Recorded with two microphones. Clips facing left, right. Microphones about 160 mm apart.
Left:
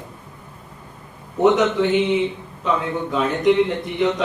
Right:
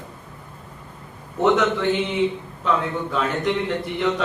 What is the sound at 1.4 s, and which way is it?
A man's voice, 20° left (ahead or behind).